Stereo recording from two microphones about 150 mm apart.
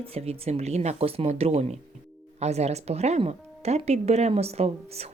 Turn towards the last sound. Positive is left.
turn(degrees=-45)  # may be behind; listen again after turning